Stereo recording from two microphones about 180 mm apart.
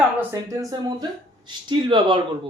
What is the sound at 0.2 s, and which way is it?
Speech, 15° right (ahead or behind).